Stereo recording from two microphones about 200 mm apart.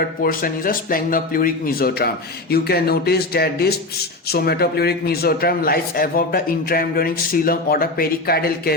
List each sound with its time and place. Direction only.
0.0 s a man's voice: 45° left (ahead or behind)